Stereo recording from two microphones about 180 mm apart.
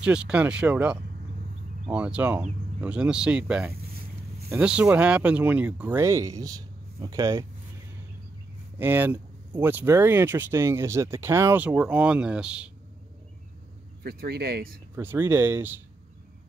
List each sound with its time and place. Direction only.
0.0 s speech: 5° right (ahead or behind)
8.7 s speech: 10° right (ahead or behind)
14.0 s speech: 60° right (ahead or behind)
15.0 s speech: 10° right (ahead or behind)